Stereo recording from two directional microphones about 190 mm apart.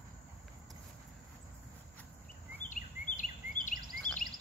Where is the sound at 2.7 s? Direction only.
40° left (ahead or behind).